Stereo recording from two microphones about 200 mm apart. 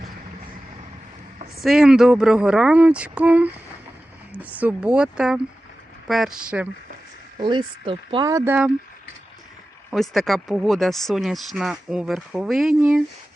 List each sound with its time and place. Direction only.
1.6 s speech: centre (ahead or behind)
7.3 s speech: 20° right (ahead or behind)
9.9 s speech: centre (ahead or behind)